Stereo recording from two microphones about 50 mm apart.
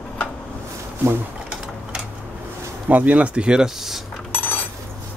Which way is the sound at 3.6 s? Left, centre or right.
Centre.